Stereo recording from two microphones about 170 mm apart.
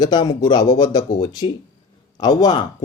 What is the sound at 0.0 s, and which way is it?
Speech, 25° left (ahead or behind).